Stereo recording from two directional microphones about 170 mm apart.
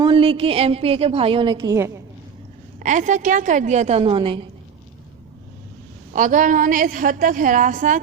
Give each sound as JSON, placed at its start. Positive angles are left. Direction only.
{"t": 0.0, "sound": "a woman's voice", "side_deg": -30}
{"t": 1.5, "sound": "a woman's voice", "side_deg": -20}
{"t": 2.7, "sound": "a woman's voice", "side_deg": -50}
{"t": 6.1, "sound": "a woman's voice", "side_deg": -50}